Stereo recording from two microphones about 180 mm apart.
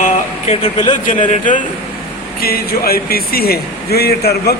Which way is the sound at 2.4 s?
55° left (ahead or behind).